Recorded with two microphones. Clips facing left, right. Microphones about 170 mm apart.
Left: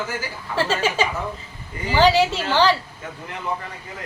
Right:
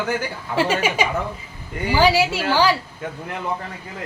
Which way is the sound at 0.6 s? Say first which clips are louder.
Right 1 dB; 15° right (ahead or behind).